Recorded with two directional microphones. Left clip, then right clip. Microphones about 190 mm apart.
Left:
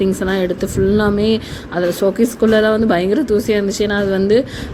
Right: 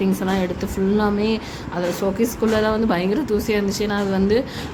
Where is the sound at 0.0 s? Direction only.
20° left (ahead or behind).